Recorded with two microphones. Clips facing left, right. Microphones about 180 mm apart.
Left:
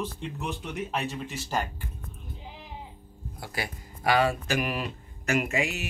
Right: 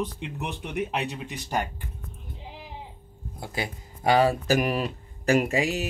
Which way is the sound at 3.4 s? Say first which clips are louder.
Right 3 dB; 20° right (ahead or behind).